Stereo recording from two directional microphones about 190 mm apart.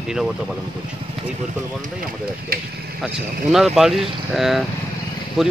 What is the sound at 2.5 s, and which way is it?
Speech, 50° right (ahead or behind).